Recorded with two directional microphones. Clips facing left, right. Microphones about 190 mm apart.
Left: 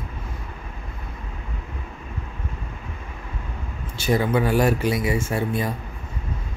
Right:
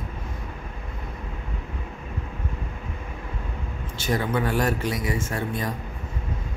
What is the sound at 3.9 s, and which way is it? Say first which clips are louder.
Speech: left 4 dB; 10° left (ahead or behind).